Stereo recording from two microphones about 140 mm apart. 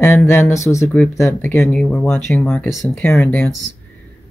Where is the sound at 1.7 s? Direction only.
10° left (ahead or behind).